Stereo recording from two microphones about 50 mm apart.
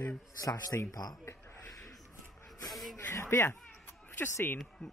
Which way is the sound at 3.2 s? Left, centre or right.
Left.